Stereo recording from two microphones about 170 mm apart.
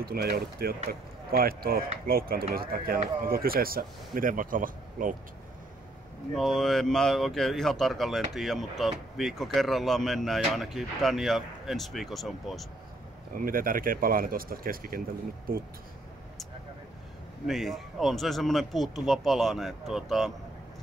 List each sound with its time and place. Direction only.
0.0 s speech: 65° right (ahead or behind)
6.3 s speech: centre (ahead or behind)
13.3 s speech: 55° right (ahead or behind)
17.5 s speech: centre (ahead or behind)